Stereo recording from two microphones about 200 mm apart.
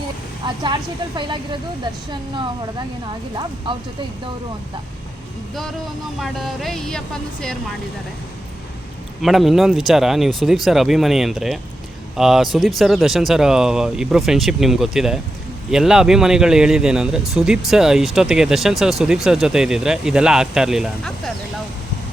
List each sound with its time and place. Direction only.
0.4 s speech: 20° right (ahead or behind)
3.7 s speech: 25° right (ahead or behind)
6.1 s speech: centre (ahead or behind)
9.2 s speech: centre (ahead or behind)